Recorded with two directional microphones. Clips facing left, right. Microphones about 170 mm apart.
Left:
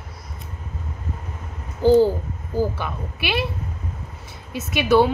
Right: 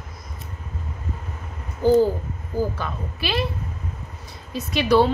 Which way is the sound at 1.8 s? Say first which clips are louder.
Left 2 dB; 25° left (ahead or behind).